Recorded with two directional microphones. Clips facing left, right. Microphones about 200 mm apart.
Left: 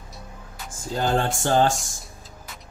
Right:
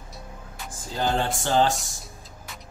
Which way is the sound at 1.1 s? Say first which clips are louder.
Left 2 dB; 50° left (ahead or behind).